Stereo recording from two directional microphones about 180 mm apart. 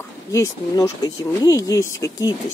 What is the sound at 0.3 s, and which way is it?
Speech, 15° left (ahead or behind).